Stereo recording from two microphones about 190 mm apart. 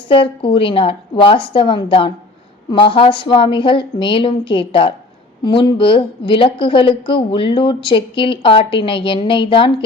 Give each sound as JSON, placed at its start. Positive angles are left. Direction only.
{"t": 0.1, "sound": "a woman's voice", "side_deg": 30}